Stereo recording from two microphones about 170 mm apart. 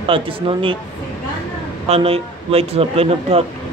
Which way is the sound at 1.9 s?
35° right (ahead or behind).